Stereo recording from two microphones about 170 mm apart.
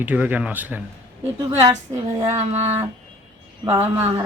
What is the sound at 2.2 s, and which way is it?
Speech, 40° right (ahead or behind).